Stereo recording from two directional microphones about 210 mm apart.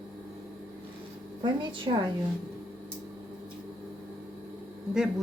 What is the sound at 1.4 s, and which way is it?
Speech, 25° right (ahead or behind).